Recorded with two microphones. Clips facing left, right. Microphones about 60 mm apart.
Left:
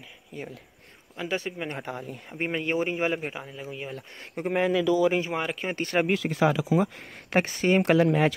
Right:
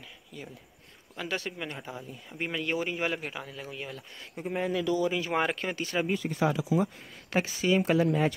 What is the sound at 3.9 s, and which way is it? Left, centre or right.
Speech, left.